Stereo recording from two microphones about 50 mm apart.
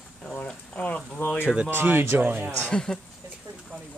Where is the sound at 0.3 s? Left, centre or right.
Left.